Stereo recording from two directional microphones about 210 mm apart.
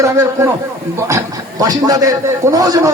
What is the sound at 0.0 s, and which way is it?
A man's voice, 15° right (ahead or behind).